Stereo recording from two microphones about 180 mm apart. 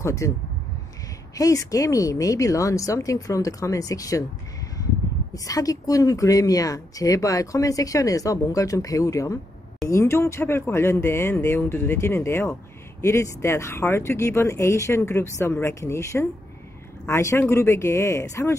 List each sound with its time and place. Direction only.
0.0 s speech: 15° left (ahead or behind)
1.3 s speech: 20° left (ahead or behind)
5.3 s speech: 20° left (ahead or behind)